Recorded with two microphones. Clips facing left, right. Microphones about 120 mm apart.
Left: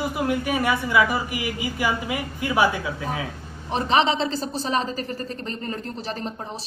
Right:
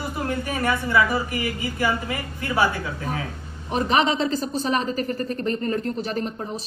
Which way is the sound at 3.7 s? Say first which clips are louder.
Even; 30° left (ahead or behind).